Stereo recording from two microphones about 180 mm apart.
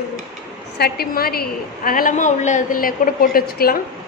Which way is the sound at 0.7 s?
60° left (ahead or behind).